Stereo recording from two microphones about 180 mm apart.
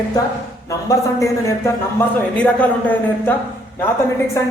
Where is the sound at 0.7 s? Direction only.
15° left (ahead or behind).